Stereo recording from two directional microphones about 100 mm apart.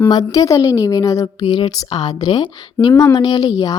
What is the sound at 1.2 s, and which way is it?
Speech, 55° left (ahead or behind).